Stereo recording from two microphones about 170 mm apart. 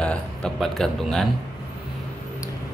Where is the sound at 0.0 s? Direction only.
5° left (ahead or behind).